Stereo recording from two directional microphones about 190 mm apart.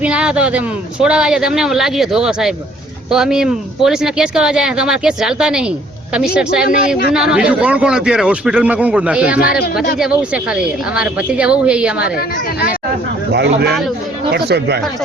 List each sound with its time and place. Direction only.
0.0 s speech: 5° right (ahead or behind)
9.4 s speech: 50° left (ahead or behind)
10.0 s speech: 5° right (ahead or behind)
13.3 s speech: 60° right (ahead or behind)